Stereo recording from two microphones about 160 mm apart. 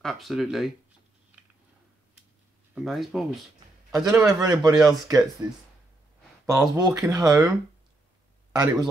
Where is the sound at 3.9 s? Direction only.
20° right (ahead or behind).